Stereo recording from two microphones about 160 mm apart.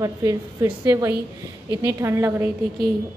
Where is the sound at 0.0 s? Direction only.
20° right (ahead or behind).